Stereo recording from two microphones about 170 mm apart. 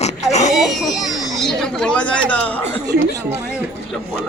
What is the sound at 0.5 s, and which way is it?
Speech, centre (ahead or behind).